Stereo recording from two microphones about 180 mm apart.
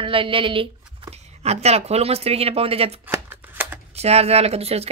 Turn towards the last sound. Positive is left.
turn(degrees=-35)  # may be behind; listen again after turning